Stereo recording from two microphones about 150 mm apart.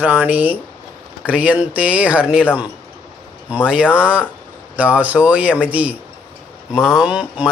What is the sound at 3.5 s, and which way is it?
A man's voice, 5° right (ahead or behind).